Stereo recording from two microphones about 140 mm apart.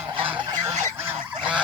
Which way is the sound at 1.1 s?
10° right (ahead or behind).